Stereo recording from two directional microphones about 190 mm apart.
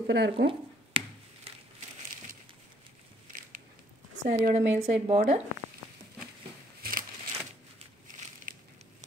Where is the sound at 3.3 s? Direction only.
45° right (ahead or behind).